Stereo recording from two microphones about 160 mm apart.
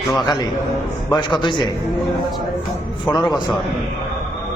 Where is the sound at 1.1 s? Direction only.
30° left (ahead or behind).